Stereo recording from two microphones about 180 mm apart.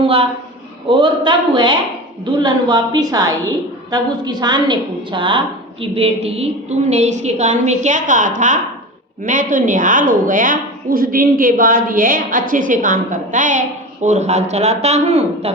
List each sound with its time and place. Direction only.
0.0 s a man's voice: 30° right (ahead or behind)